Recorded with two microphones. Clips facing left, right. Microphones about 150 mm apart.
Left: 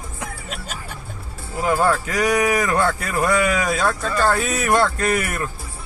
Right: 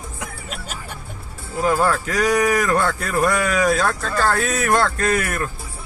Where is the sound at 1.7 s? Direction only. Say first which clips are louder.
Even; 20° left (ahead or behind).